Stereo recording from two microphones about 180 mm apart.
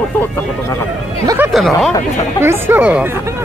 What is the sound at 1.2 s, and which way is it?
Speech, 15° right (ahead or behind).